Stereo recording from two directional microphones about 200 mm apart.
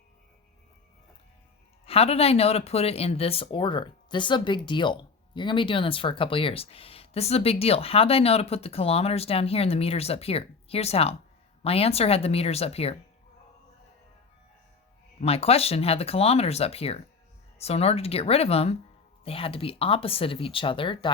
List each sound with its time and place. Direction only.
1.8 s speech: 30° left (ahead or behind)
15.2 s speech: 30° left (ahead or behind)